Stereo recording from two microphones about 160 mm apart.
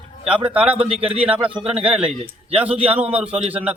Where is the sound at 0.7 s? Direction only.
35° right (ahead or behind).